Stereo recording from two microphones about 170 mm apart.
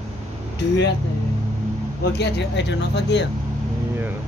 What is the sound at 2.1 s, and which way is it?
Speech, 90° left.